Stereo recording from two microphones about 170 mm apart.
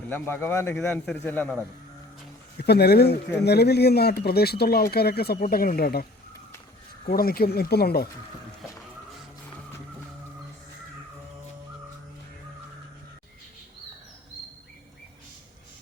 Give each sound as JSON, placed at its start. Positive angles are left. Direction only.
{"t": 0.1, "sound": "a man's voice", "side_deg": 15}
{"t": 2.6, "sound": "speech", "side_deg": 70}